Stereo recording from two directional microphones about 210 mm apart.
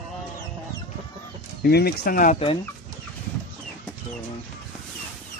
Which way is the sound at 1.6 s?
50° left (ahead or behind).